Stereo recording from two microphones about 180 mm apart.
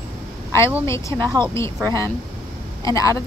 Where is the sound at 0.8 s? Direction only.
15° left (ahead or behind).